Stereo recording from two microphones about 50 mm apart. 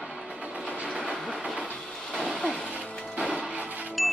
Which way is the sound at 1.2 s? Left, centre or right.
Right.